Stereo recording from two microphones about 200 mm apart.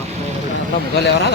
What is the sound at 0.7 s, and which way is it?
Speech, 55° left (ahead or behind).